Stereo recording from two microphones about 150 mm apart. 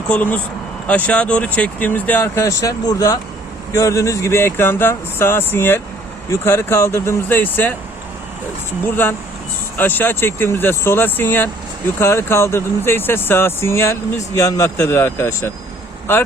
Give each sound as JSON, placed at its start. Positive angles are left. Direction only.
{"t": 0.1, "sound": "speech", "side_deg": 10}
{"t": 8.8, "sound": "speech", "side_deg": 10}